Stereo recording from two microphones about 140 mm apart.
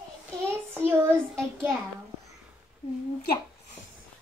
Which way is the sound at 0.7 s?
20° right (ahead or behind).